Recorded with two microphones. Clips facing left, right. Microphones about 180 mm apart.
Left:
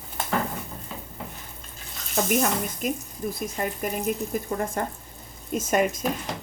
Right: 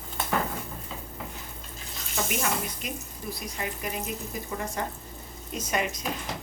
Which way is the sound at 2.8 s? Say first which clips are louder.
Left 8 dB; 45° left (ahead or behind).